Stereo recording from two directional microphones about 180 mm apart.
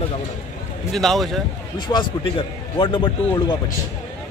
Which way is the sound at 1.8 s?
25° left (ahead or behind).